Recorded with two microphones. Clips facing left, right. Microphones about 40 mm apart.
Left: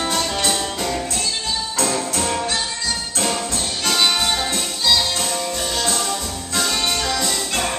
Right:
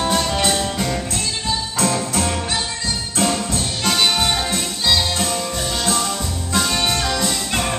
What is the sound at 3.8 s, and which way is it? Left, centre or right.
Music, centre.